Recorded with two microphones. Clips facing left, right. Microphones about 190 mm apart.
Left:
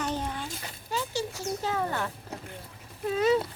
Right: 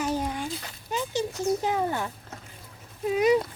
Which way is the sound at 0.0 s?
10° right (ahead or behind).